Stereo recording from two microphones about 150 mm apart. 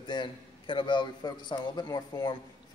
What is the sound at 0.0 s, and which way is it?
A man's voice, 30° left (ahead or behind).